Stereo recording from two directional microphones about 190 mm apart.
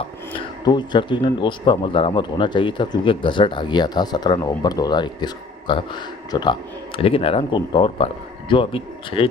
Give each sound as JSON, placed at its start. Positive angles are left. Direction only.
{"t": 0.0, "sound": "speech", "side_deg": 25}